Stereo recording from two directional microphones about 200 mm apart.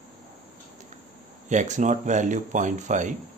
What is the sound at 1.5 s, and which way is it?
Speech, 35° right (ahead or behind).